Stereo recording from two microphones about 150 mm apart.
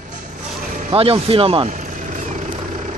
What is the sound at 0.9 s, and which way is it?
Speech, 40° right (ahead or behind).